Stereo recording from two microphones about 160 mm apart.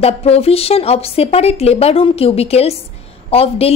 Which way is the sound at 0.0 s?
40° left (ahead or behind).